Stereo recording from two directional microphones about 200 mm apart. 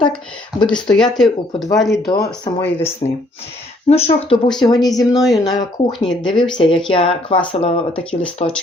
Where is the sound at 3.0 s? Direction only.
20° left (ahead or behind).